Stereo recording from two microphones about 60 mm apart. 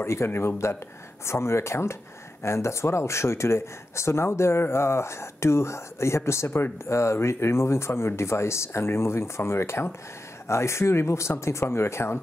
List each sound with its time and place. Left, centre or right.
0.0 s speech: left